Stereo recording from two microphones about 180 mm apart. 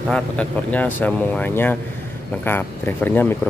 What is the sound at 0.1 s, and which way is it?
Speech, 5° left (ahead or behind).